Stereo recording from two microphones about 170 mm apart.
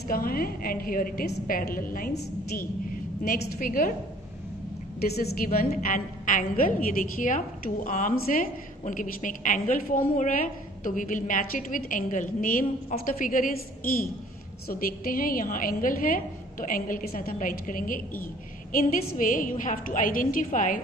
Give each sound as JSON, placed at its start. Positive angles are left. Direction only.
{"t": 0.1, "sound": "a woman's voice", "side_deg": 60}
{"t": 5.0, "sound": "a woman's voice", "side_deg": 70}
{"t": 14.7, "sound": "a woman's voice", "side_deg": 60}